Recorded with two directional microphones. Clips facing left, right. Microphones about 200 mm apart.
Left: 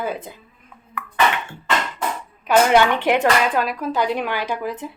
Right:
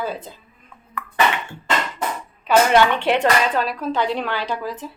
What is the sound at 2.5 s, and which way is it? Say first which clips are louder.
Speech: even; 15° left (ahead or behind).